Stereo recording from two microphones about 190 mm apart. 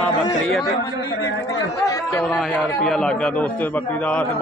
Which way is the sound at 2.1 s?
Centre (ahead or behind).